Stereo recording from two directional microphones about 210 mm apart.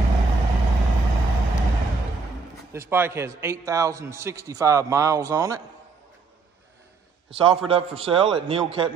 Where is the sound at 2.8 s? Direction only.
10° right (ahead or behind).